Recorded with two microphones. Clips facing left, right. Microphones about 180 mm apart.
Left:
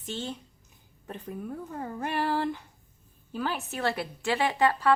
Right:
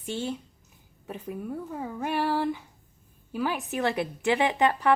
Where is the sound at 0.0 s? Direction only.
10° right (ahead or behind).